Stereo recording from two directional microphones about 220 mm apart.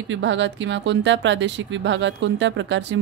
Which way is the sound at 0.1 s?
55° right (ahead or behind).